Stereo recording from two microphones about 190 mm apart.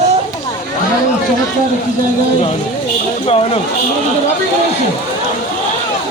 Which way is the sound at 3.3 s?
30° left (ahead or behind).